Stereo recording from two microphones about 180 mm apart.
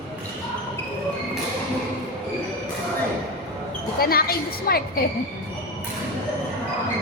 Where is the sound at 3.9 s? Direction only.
55° left (ahead or behind).